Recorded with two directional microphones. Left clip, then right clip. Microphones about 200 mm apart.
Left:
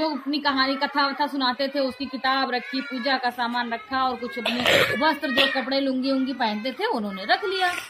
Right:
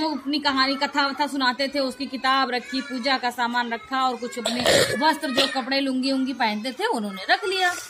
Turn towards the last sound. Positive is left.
turn(degrees=-25)  # may be behind; listen again after turning